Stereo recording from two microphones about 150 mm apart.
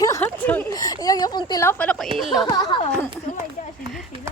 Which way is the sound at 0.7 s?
25° left (ahead or behind).